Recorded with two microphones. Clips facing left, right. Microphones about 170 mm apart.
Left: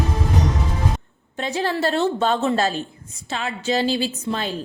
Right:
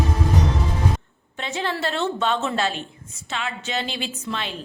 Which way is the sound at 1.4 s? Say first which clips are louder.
Left 4 dB; 40° left (ahead or behind).